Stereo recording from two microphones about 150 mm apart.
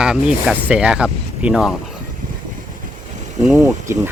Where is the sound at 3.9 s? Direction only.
20° right (ahead or behind).